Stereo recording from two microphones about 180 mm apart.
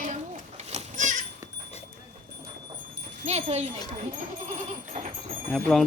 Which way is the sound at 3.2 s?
35° right (ahead or behind).